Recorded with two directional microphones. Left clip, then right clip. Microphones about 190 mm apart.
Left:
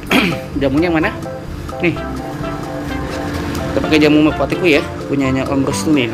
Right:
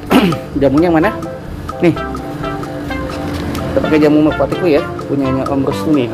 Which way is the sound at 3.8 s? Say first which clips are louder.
Right 1 dB; centre (ahead or behind).